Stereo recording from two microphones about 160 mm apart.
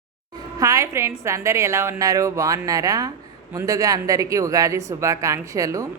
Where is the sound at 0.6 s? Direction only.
20° right (ahead or behind).